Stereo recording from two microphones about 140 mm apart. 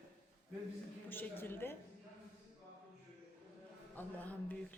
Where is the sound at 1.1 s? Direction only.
15° left (ahead or behind).